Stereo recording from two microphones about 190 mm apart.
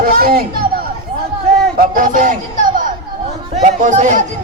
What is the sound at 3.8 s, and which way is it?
Speech, 40° right (ahead or behind).